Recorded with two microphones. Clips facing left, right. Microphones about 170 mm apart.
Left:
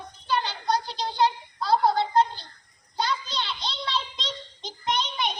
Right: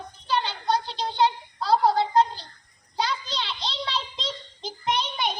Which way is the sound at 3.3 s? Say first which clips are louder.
Even; 30° right (ahead or behind).